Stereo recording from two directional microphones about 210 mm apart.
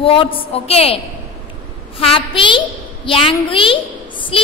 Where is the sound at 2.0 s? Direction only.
25° left (ahead or behind).